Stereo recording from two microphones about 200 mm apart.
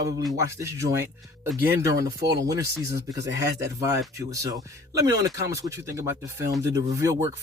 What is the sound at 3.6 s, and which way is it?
Speech, 15° right (ahead or behind).